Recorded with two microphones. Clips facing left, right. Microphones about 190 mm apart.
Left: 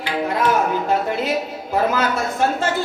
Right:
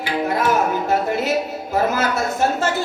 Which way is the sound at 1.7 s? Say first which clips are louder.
Even; 45° right (ahead or behind).